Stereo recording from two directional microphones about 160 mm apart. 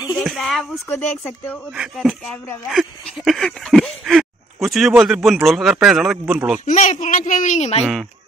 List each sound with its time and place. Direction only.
0.2 s speech: centre (ahead or behind)
1.8 s speech: 5° right (ahead or behind)
2.7 s a sound: centre (ahead or behind)
6.6 s a man's voice: 50° left (ahead or behind)